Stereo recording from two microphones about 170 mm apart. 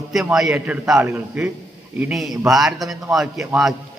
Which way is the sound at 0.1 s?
Centre (ahead or behind).